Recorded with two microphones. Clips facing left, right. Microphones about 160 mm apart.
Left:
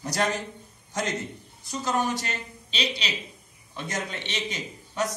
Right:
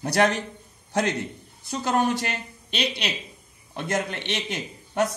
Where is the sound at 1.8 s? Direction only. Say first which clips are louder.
Right 4 dB; 60° right (ahead or behind).